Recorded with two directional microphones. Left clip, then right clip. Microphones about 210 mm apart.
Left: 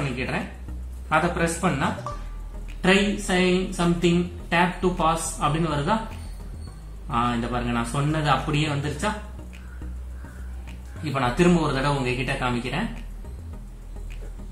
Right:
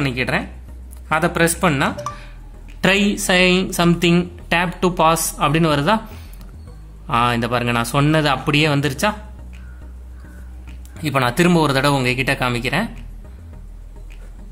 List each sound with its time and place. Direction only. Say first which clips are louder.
1.0 s a woman's voice: right 5 dB; 50° right (ahead or behind)
7.1 s a woman's voice: right 7 dB; 50° right (ahead or behind)
11.1 s a woman's voice: right 5 dB; 50° right (ahead or behind)